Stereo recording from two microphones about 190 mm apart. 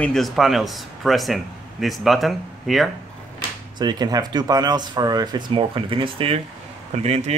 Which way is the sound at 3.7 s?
20° right (ahead or behind).